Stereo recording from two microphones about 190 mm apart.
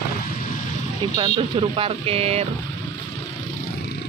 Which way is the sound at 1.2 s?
30° right (ahead or behind).